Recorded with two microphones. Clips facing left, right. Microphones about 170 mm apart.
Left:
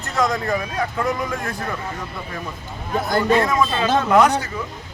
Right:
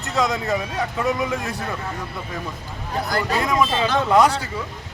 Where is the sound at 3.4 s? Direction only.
20° right (ahead or behind).